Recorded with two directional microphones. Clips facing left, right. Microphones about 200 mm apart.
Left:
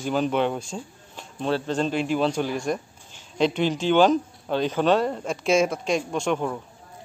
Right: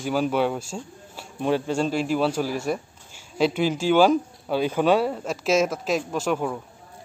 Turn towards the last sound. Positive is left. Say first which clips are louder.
# even
turn(degrees=-5)  # may be behind; listen again after turning